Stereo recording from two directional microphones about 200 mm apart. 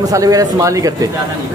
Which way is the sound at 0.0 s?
20° right (ahead or behind).